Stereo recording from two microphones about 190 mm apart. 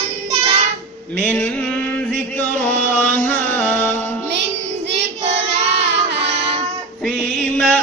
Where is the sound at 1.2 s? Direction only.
10° left (ahead or behind).